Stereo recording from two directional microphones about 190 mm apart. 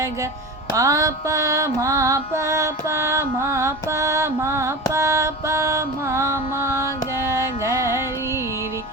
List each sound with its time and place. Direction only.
0.7 s music: 15° right (ahead or behind)